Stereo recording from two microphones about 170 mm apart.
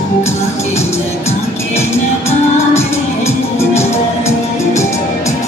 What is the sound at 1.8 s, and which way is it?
Music, 15° left (ahead or behind).